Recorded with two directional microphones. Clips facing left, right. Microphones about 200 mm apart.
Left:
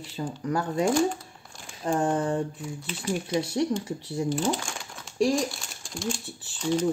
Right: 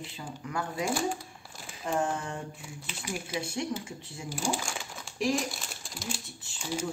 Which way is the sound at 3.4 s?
35° left (ahead or behind).